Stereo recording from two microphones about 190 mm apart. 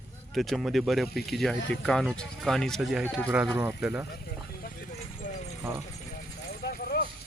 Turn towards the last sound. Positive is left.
turn(degrees=55)  # may be behind; listen again after turning